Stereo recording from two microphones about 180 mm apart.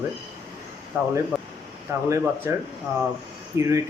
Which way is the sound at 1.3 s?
Centre (ahead or behind).